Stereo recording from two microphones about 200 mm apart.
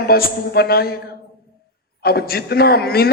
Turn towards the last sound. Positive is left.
turn(degrees=50)  # may be behind; listen again after turning